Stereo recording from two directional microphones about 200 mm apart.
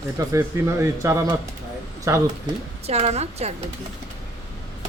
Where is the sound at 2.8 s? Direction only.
30° right (ahead or behind).